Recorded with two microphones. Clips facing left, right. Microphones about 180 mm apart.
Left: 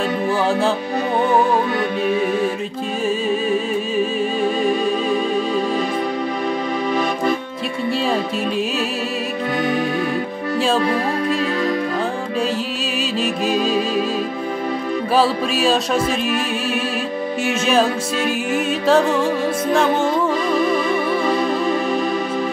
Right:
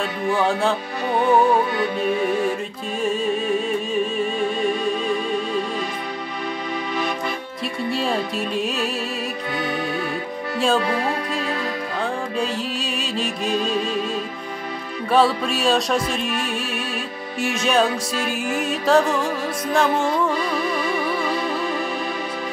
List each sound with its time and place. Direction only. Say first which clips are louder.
0.3 s music: even; centre (ahead or behind)
13.2 s music: left 4 dB; 5° left (ahead or behind)
15.1 s music: even; 5° left (ahead or behind)
17.4 s music: left 2 dB; centre (ahead or behind)